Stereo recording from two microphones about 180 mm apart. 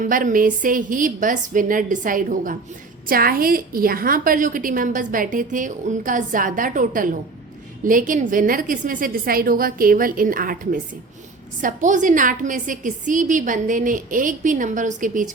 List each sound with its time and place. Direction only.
0.0 s a woman's voice: 50° right (ahead or behind)